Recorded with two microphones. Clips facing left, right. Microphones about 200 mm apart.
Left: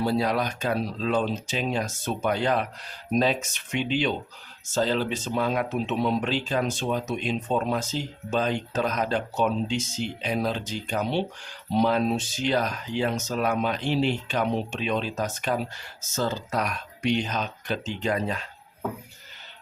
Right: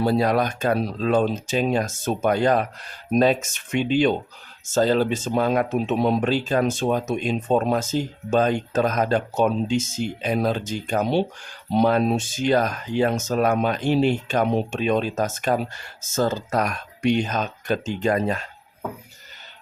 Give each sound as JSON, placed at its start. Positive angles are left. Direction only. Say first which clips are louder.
{"t": 0.0, "sound": "speech", "louder": "right 4 dB", "side_deg": -50}